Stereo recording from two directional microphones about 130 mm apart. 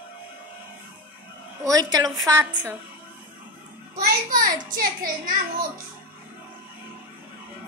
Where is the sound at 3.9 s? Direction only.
90° right.